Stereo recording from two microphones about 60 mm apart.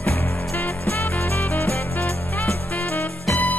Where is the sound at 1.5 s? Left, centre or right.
Left.